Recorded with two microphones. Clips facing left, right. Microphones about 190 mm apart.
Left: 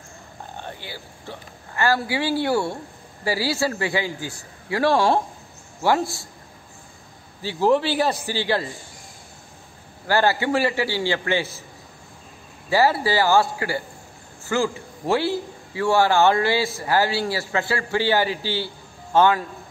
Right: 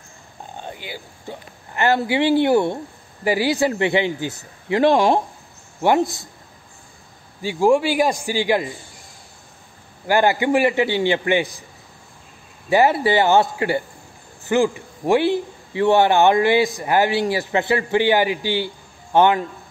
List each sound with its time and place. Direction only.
0.6 s a man's voice: 15° right (ahead or behind)
7.4 s a man's voice: 10° right (ahead or behind)
10.0 s a man's voice: 15° right (ahead or behind)
12.6 s a man's voice: 20° right (ahead or behind)